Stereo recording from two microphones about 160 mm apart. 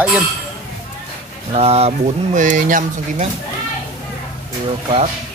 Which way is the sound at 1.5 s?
40° right (ahead or behind).